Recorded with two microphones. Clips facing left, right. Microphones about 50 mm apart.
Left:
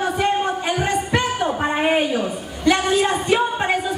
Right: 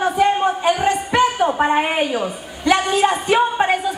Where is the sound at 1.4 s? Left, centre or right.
Centre.